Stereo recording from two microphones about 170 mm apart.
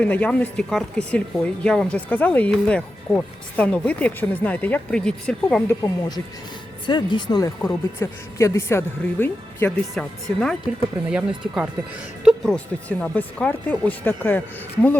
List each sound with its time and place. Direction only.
0.0 s speech: 10° left (ahead or behind)
5.8 s speech: 25° left (ahead or behind)
7.6 s speech: 10° left (ahead or behind)